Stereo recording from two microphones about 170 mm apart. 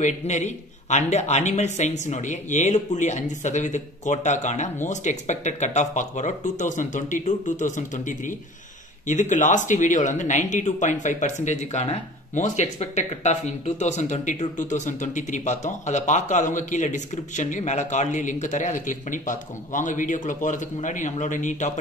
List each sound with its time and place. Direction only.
0.0 s speech: 45° left (ahead or behind)